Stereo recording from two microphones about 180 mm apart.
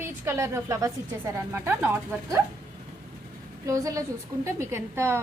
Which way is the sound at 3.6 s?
20° right (ahead or behind).